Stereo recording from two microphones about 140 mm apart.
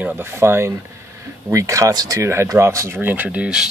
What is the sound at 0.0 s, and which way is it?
Speech, 15° right (ahead or behind).